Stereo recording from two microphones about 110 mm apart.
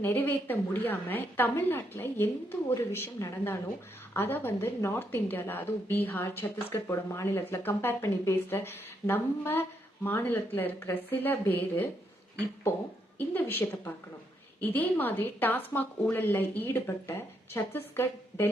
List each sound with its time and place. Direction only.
0.0 s a woman's voice: 20° left (ahead or behind)
13.1 s a woman's voice: 20° left (ahead or behind)